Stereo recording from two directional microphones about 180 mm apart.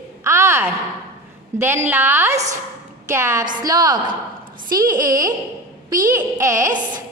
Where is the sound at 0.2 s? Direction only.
15° right (ahead or behind).